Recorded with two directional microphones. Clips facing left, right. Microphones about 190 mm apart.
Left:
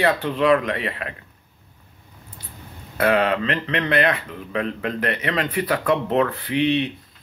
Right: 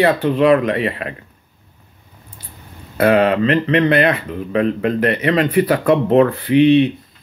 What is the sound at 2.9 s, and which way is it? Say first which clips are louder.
Speech: right 6 dB; 35° right (ahead or behind).